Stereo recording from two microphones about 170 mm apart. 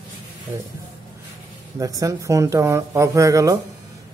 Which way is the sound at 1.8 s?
20° right (ahead or behind).